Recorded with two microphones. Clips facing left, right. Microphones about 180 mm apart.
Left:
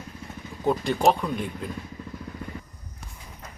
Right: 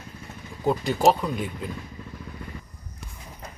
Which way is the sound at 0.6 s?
Centre (ahead or behind).